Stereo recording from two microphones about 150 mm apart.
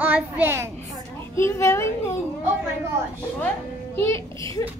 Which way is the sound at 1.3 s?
20° left (ahead or behind).